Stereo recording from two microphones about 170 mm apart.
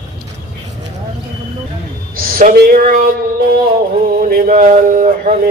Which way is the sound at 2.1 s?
60° right (ahead or behind).